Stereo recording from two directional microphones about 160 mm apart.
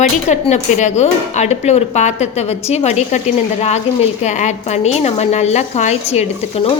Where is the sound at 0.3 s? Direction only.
45° left (ahead or behind).